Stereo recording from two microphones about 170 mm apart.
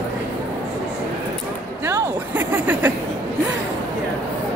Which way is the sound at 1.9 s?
15° right (ahead or behind).